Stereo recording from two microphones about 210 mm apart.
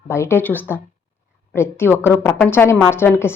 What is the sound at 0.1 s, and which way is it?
Speech, 10° left (ahead or behind).